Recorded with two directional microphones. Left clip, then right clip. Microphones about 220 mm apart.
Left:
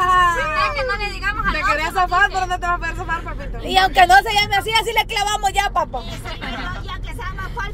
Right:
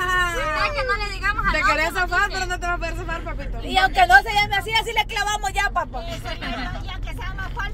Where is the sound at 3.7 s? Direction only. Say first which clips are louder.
Left 3 dB; 25° left (ahead or behind).